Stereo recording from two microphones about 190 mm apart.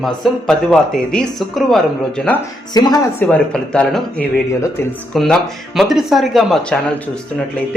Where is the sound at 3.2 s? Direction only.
5° left (ahead or behind).